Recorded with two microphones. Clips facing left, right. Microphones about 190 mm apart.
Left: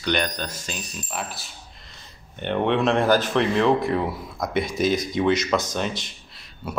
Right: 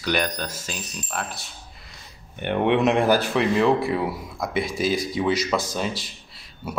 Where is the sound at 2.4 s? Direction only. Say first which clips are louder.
Right 1 dB; 15° right (ahead or behind).